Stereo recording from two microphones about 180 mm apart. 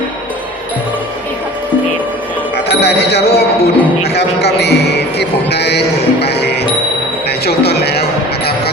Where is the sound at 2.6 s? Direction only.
65° left (ahead or behind).